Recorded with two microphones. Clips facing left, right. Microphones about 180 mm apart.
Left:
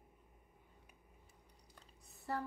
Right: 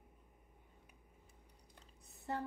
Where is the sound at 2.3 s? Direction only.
20° right (ahead or behind).